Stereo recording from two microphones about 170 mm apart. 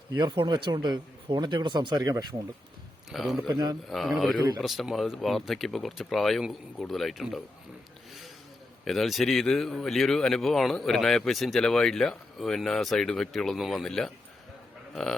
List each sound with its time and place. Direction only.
0.2 s speech: 25° right (ahead or behind)
3.1 s speech: centre (ahead or behind)
3.4 s speech: 25° right (ahead or behind)
3.8 s speech: centre (ahead or behind)
8.8 s speech: centre (ahead or behind)